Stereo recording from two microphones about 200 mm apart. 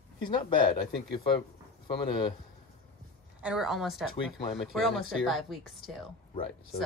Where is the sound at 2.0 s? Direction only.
25° left (ahead or behind).